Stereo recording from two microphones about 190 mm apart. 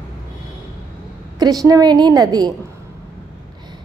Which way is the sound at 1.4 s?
20° right (ahead or behind).